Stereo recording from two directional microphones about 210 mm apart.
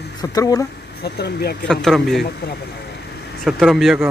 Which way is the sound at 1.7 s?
Centre (ahead or behind).